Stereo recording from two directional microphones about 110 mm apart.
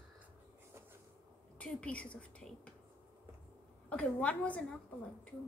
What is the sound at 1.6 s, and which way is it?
A woman's voice, 10° left (ahead or behind).